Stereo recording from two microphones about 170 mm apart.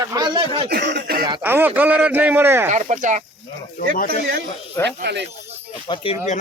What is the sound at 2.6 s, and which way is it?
Speech, 45° right (ahead or behind).